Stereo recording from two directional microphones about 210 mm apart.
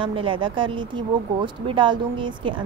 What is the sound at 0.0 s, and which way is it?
A woman's voice, 25° right (ahead or behind).